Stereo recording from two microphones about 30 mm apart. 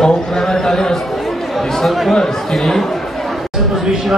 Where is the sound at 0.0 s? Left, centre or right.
Left.